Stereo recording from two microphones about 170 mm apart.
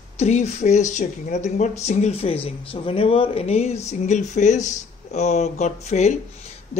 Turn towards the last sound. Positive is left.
turn(degrees=45)  # may be behind; listen again after turning